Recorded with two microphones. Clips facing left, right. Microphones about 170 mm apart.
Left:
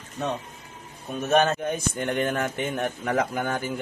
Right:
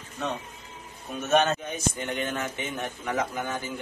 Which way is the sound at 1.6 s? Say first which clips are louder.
Left 4 dB; 55° left (ahead or behind).